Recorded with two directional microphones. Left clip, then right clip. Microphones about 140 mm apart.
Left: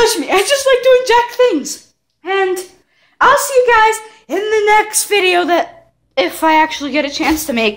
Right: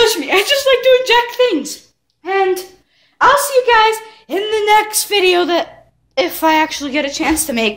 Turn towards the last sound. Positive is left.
turn(degrees=35)  # may be behind; listen again after turning